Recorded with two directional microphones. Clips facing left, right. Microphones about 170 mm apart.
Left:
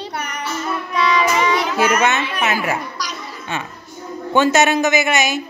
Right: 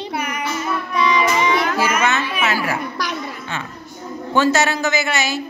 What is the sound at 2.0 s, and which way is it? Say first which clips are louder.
Speech: left 1 dB; 20° left (ahead or behind).